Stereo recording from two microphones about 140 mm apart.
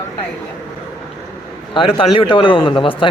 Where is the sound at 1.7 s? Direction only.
40° left (ahead or behind).